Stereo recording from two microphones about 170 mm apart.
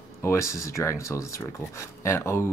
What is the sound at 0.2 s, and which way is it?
Speech, 15° left (ahead or behind).